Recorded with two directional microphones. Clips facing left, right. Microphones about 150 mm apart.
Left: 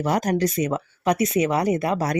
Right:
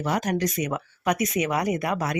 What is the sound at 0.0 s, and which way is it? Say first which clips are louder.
Speech: left 4 dB; 40° left (ahead or behind).